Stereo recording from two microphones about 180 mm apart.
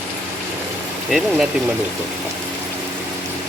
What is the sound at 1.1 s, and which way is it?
Speech, 5° right (ahead or behind).